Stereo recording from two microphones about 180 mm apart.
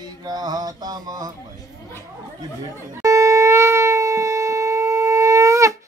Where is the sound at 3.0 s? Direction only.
15° right (ahead or behind).